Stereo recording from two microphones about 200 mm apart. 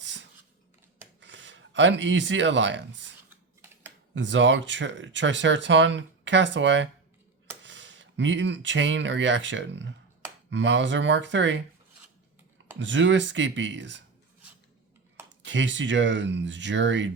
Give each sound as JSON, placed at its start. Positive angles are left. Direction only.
{"t": 0.0, "sound": "a sound", "side_deg": -65}
{"t": 1.2, "sound": "speech", "side_deg": -65}
{"t": 12.8, "sound": "speech", "side_deg": -65}
{"t": 15.3, "sound": "speech", "side_deg": -65}